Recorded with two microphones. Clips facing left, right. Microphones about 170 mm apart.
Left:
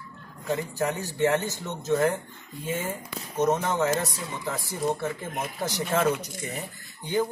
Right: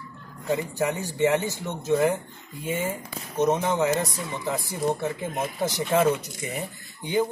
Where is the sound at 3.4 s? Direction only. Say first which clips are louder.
Right 2 dB; 10° right (ahead or behind).